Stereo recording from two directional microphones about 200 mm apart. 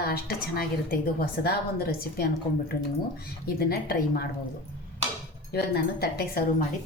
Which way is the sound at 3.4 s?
50° left (ahead or behind).